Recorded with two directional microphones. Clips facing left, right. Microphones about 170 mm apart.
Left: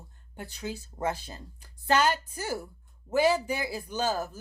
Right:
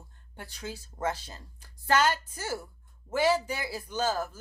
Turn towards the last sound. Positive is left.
turn(degrees=15)  # may be behind; listen again after turning